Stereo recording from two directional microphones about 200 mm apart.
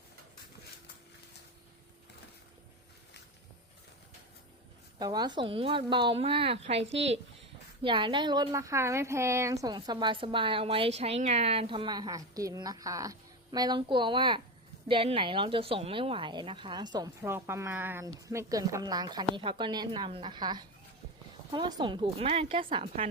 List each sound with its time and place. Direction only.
4.9 s a woman's voice: 20° right (ahead or behind)
6.9 s speech: 65° right (ahead or behind)
7.8 s a woman's voice: 25° right (ahead or behind)